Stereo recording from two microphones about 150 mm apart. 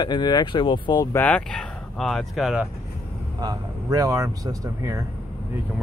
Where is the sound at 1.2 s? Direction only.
10° left (ahead or behind).